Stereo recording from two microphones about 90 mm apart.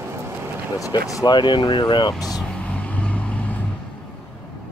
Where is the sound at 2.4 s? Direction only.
15° left (ahead or behind).